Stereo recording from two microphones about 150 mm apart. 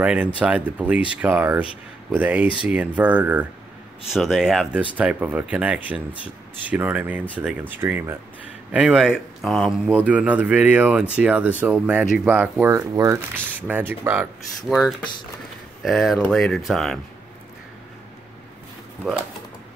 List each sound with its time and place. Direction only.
0.0 s speech: 10° right (ahead or behind)
9.8 s speech: 10° right (ahead or behind)
14.7 s speech: centre (ahead or behind)
19.0 s speech: centre (ahead or behind)